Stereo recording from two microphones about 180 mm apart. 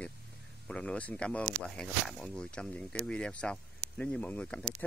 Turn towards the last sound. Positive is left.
turn(degrees=10)  # may be behind; listen again after turning